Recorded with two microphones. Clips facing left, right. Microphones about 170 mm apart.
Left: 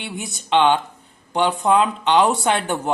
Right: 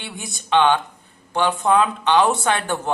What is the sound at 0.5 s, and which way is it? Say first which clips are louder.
Speech: even; 15° left (ahead or behind).